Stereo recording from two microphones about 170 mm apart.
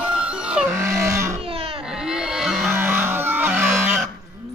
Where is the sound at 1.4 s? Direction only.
35° right (ahead or behind).